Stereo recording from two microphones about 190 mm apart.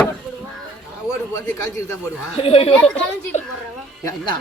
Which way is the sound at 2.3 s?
30° left (ahead or behind).